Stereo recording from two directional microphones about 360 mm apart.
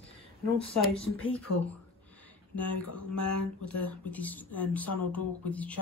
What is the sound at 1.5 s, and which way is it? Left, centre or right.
Speech, left.